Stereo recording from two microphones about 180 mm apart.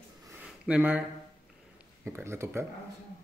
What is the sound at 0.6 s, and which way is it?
Speech, 5° right (ahead or behind).